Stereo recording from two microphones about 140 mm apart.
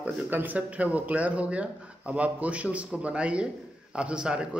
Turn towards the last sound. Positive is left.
turn(degrees=-5)  # may be behind; listen again after turning